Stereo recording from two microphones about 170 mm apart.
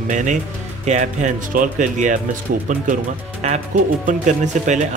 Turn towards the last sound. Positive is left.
turn(degrees=-45)  # may be behind; listen again after turning